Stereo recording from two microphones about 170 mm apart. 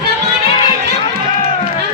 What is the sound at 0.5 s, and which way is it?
Run, 30° left (ahead or behind).